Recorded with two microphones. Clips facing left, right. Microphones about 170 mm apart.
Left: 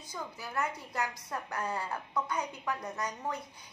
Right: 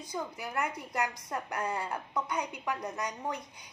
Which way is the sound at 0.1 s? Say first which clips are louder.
Right 3 dB; 15° right (ahead or behind).